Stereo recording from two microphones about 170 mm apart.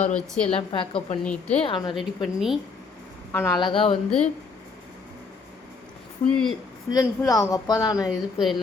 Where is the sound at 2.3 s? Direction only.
Centre (ahead or behind).